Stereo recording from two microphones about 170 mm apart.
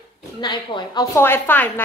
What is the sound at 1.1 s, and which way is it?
Speech, 15° left (ahead or behind).